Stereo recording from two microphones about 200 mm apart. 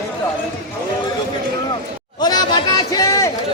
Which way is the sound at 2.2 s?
20° left (ahead or behind).